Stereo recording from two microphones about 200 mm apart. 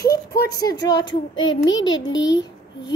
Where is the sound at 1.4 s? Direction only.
70° left (ahead or behind).